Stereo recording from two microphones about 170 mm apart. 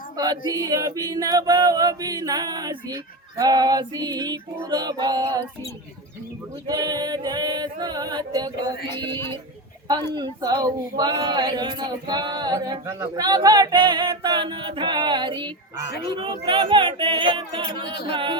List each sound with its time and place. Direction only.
0.2 s speech: 20° right (ahead or behind)
6.7 s speech: 25° right (ahead or behind)
10.2 s speech: 25° right (ahead or behind)